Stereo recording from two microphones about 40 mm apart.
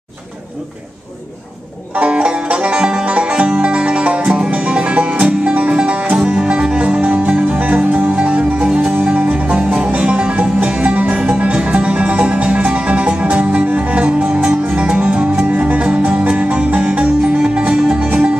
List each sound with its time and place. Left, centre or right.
2.0 s music: right
8.7 s music: right
9.4 s music: right